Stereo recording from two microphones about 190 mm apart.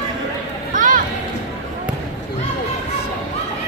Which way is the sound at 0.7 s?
45° right (ahead or behind).